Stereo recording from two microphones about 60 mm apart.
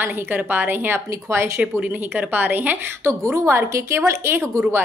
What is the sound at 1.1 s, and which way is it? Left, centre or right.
Speech, right.